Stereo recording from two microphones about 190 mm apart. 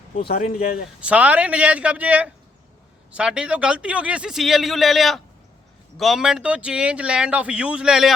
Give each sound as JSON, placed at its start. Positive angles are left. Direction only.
{"t": 0.2, "sound": "speech", "side_deg": 50}
{"t": 1.0, "sound": "a man's voice", "side_deg": -5}